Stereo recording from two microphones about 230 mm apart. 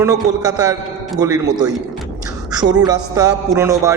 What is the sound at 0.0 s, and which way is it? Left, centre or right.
Speech, centre.